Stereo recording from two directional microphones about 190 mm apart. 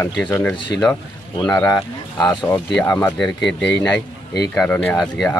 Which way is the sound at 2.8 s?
10° left (ahead or behind).